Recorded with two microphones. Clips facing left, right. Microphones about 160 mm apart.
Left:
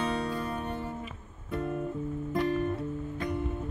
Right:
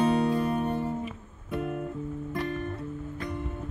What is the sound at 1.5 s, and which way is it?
Music, 10° right (ahead or behind).